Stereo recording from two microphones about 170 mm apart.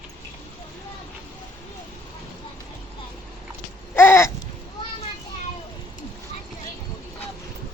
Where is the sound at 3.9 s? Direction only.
15° left (ahead or behind).